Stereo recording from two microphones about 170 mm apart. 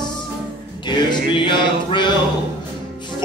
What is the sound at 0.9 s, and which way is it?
Music, 25° left (ahead or behind).